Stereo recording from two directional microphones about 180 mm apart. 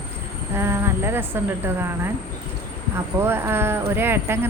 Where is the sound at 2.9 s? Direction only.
10° right (ahead or behind).